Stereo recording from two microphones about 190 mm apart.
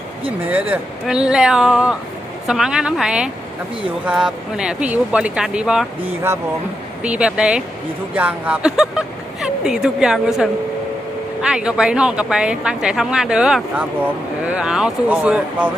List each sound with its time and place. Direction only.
0.5 s speech: 5° right (ahead or behind)
7.0 s speech: 5° right (ahead or behind)